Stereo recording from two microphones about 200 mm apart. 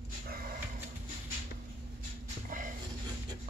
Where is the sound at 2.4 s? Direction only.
40° right (ahead or behind).